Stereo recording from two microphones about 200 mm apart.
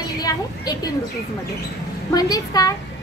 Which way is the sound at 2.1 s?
20° left (ahead or behind).